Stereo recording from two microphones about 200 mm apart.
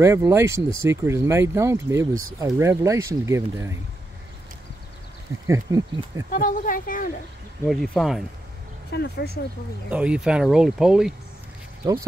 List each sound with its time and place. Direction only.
0.0 s speech: 15° right (ahead or behind)
5.5 s speech: 15° right (ahead or behind)
6.3 s speech: 45° left (ahead or behind)
7.6 s speech: centre (ahead or behind)
8.9 s speech: 55° left (ahead or behind)
9.8 s speech: 5° right (ahead or behind)
11.8 s speech: 15° right (ahead or behind)